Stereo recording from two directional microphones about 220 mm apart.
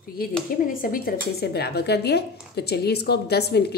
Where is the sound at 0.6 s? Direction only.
40° left (ahead or behind).